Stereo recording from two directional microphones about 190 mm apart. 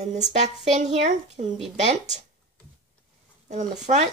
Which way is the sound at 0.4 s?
40° right (ahead or behind).